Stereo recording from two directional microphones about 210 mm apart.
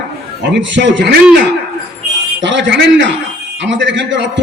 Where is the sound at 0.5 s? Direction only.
60° right (ahead or behind).